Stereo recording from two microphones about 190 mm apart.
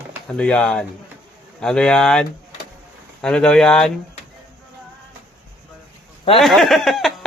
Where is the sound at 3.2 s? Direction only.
5° left (ahead or behind).